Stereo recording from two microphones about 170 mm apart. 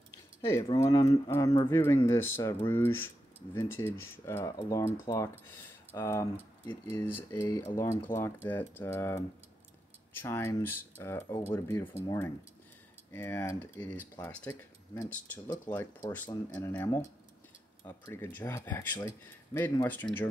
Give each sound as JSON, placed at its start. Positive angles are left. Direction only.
{"t": 0.7, "sound": "speech", "side_deg": 20}